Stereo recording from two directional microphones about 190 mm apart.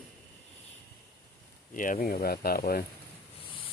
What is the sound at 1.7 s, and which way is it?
Speech, 45° left (ahead or behind).